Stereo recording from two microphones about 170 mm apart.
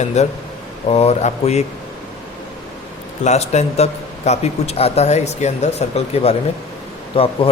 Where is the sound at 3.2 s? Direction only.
40° left (ahead or behind).